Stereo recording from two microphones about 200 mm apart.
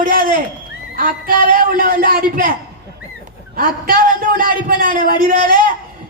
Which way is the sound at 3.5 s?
45° right (ahead or behind).